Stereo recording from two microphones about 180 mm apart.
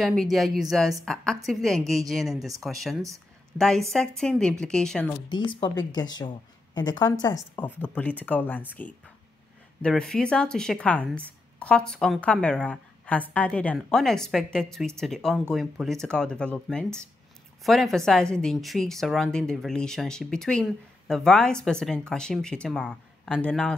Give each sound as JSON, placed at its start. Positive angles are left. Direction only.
{"t": 0.0, "sound": "a woman's voice", "side_deg": 0}
{"t": 5.3, "sound": "a woman's voice", "side_deg": 25}